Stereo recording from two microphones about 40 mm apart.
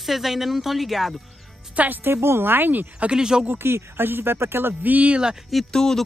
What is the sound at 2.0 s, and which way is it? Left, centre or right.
Speech, right.